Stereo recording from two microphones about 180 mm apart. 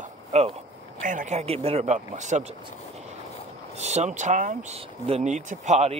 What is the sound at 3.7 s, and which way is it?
Speech, 40° right (ahead or behind).